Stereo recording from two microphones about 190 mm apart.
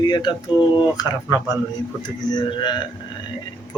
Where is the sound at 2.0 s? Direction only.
20° left (ahead or behind).